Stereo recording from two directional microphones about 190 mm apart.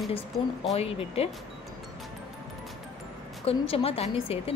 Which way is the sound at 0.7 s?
30° left (ahead or behind).